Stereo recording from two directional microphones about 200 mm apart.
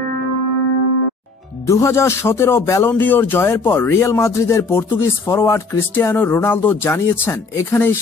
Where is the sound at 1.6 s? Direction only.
15° left (ahead or behind).